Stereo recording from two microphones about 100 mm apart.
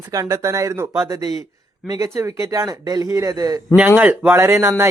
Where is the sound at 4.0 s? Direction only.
15° right (ahead or behind).